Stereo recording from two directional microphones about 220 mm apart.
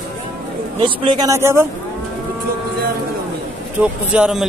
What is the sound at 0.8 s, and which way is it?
Speech, 20° right (ahead or behind).